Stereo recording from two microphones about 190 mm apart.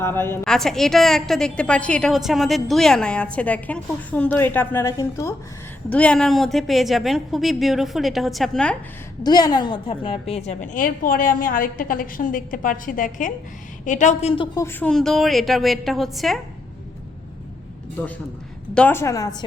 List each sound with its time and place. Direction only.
0.0 s a woman's voice: 10° left (ahead or behind)
5.9 s a woman's voice: 5° left (ahead or behind)
9.2 s a woman's voice: 20° left (ahead or behind)
14.5 s a woman's voice: 15° left (ahead or behind)
18.0 s a woman's voice: 10° left (ahead or behind)